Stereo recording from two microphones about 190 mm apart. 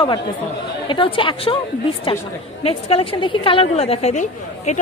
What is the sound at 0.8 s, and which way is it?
A woman's voice, 25° left (ahead or behind).